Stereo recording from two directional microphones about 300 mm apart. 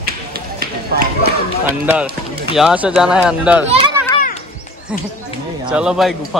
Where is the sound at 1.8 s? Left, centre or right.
Centre.